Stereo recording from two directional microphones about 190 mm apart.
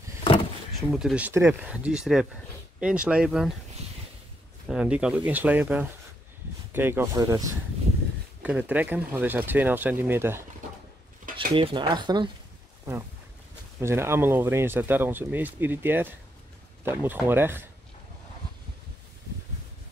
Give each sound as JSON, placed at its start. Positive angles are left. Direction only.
{"t": 0.9, "sound": "speech", "side_deg": -5}
{"t": 4.6, "sound": "speech", "side_deg": -5}
{"t": 8.4, "sound": "speech", "side_deg": -5}
{"t": 11.3, "sound": "speech", "side_deg": -25}
{"t": 13.7, "sound": "speech", "side_deg": -15}